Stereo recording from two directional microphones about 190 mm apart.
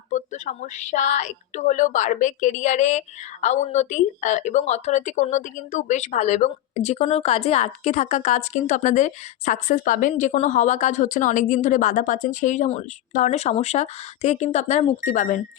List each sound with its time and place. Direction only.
0.1 s speech: 40° left (ahead or behind)